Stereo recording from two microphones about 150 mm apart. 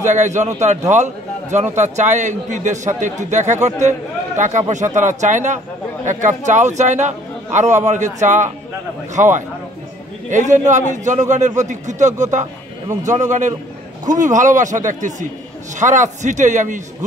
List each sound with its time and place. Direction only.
0.0 s a man's voice: 50° right (ahead or behind)